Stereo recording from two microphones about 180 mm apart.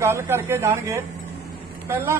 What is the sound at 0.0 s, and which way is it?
A man's voice, 15° right (ahead or behind).